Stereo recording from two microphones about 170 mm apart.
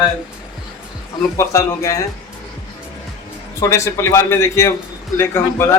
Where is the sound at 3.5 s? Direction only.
20° left (ahead or behind).